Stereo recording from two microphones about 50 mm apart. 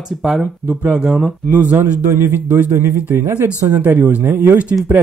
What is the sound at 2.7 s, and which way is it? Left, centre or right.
Speech, right.